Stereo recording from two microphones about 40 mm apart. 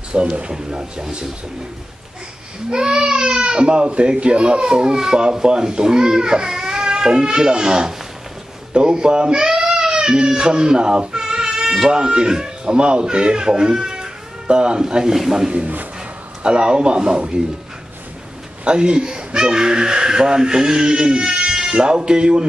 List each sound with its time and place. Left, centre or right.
0.1 s speech: right
2.7 s a man's voice: centre
18.6 s speech: right